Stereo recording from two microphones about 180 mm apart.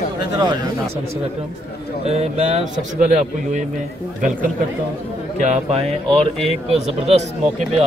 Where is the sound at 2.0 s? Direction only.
35° right (ahead or behind).